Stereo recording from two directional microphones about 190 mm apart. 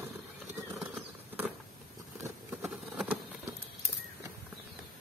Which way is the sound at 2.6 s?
5° right (ahead or behind).